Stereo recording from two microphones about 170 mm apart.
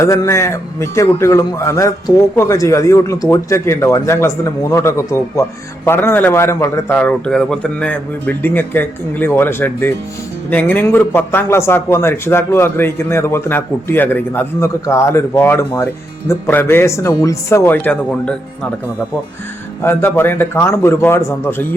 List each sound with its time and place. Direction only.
0.0 s a man's voice: 15° left (ahead or behind)
19.8 s a man's voice: 15° left (ahead or behind)